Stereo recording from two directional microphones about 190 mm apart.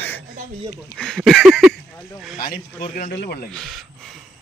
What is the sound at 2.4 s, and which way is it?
Speech, 50° left (ahead or behind).